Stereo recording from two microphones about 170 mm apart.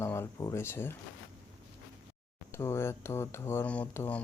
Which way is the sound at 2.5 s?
15° left (ahead or behind).